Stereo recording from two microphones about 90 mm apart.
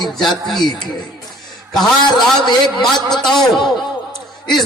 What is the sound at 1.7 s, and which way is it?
A man's voice, centre (ahead or behind).